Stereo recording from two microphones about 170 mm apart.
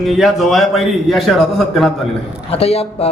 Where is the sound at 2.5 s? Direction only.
35° left (ahead or behind).